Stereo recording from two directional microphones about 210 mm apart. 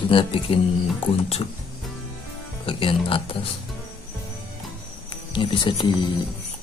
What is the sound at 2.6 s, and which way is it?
Speech, 25° left (ahead or behind).